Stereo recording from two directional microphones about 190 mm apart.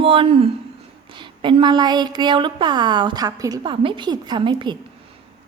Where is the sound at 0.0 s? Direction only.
30° right (ahead or behind).